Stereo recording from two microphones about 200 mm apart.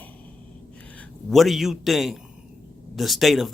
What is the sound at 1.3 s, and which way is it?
Speech, centre (ahead or behind).